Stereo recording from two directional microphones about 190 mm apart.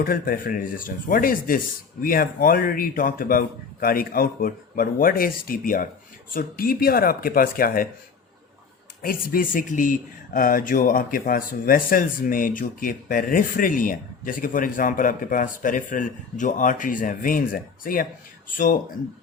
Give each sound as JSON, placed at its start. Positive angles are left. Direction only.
{"t": 0.0, "sound": "speech", "side_deg": 50}
{"t": 9.0, "sound": "speech", "side_deg": 50}